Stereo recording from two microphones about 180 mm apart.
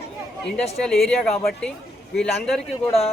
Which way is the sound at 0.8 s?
5° left (ahead or behind).